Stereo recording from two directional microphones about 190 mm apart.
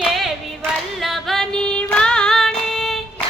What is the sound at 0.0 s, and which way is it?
Clapping, centre (ahead or behind).